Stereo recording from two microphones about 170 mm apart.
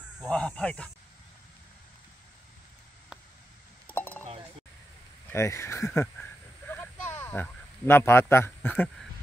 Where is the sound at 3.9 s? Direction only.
10° left (ahead or behind).